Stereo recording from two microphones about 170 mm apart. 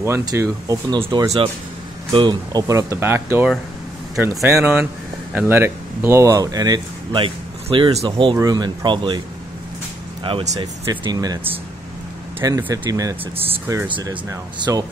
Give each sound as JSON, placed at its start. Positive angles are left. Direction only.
{"t": 0.0, "sound": "speech", "side_deg": -20}
{"t": 2.1, "sound": "speech", "side_deg": -25}
{"t": 8.4, "sound": "speech", "side_deg": -25}
{"t": 10.2, "sound": "speech", "side_deg": -35}
{"t": 12.4, "sound": "speech", "side_deg": -20}
{"t": 13.8, "sound": "speech", "side_deg": -30}